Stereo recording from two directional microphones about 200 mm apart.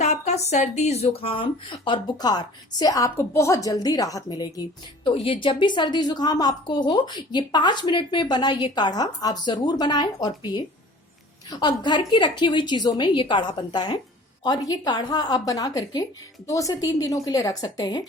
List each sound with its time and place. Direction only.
0.0 s a woman's voice: 35° left (ahead or behind)